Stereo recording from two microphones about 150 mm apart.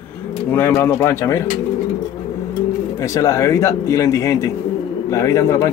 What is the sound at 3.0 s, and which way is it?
Speech, 20° left (ahead or behind).